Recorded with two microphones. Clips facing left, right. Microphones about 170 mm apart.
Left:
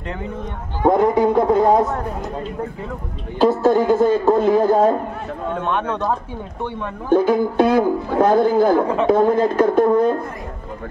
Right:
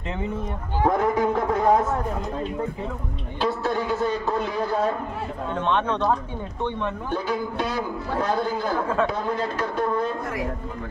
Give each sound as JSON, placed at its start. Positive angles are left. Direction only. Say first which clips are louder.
{"t": 0.8, "sound": "speech", "louder": "left 7 dB", "side_deg": 30}
{"t": 3.3, "sound": "a man's voice", "louder": "left 10 dB", "side_deg": 45}
{"t": 5.6, "sound": "speech", "louder": "even", "side_deg": 10}
{"t": 7.1, "sound": "a man's voice", "louder": "left 15 dB", "side_deg": 50}